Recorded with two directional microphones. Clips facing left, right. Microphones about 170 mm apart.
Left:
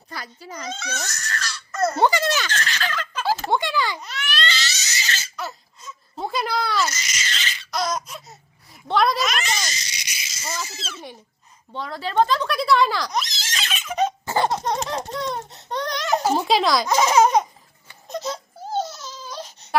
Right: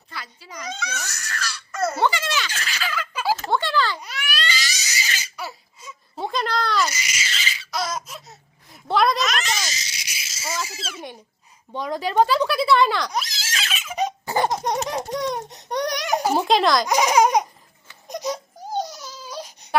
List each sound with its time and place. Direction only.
0.1 s a child's voice: 45° left (ahead or behind)
1.0 s speech: 10° right (ahead or behind)
2.0 s a sound: 40° left (ahead or behind)
2.5 s a sound: 10° right (ahead or behind)
3.5 s a sound: 15° left (ahead or behind)
4.0 s crying: 10° right (ahead or behind)
6.2 s a sound: 10° left (ahead or behind)
6.9 s laughter: 10° right (ahead or behind)
11.7 s neigh: 15° right (ahead or behind)
14.8 s baby laughter: 15° right (ahead or behind)
16.4 s baby laughter: centre (ahead or behind)
16.8 s laughter: 15° right (ahead or behind)
18.1 s baby cry: 15° right (ahead or behind)